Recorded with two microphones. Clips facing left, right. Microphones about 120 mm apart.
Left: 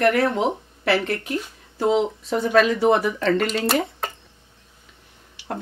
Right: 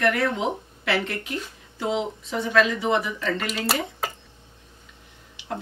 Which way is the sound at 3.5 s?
5° right (ahead or behind).